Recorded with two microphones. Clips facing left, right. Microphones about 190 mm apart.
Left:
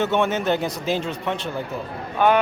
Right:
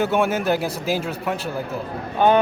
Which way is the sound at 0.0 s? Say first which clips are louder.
Right 1 dB; 10° right (ahead or behind).